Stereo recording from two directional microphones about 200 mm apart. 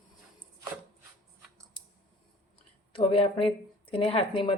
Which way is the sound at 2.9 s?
25° left (ahead or behind).